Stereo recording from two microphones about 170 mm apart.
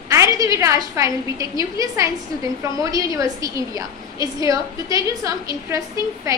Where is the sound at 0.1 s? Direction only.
20° right (ahead or behind).